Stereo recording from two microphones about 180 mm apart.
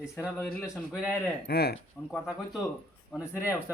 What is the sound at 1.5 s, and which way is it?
Speech, 60° left (ahead or behind).